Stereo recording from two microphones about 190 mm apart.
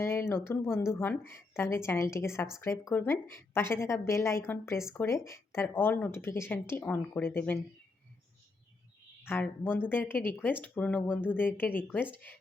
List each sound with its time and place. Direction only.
0.0 s speech: 15° left (ahead or behind)
9.2 s speech: 10° left (ahead or behind)